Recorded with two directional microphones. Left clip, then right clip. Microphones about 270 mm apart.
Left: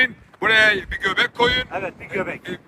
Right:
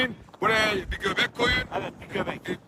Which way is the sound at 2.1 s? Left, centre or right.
Centre.